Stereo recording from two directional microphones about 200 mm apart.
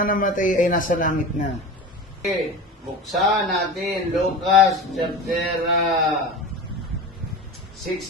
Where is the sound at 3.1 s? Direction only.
Centre (ahead or behind).